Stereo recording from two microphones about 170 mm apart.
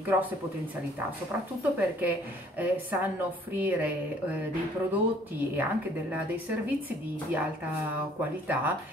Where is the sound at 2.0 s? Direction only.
10° right (ahead or behind).